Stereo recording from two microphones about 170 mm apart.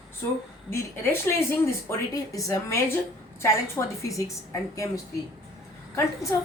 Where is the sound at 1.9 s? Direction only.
20° left (ahead or behind).